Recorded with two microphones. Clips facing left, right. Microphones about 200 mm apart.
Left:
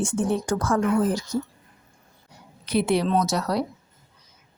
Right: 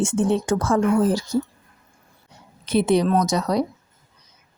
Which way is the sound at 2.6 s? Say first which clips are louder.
Right 4 dB; 20° right (ahead or behind).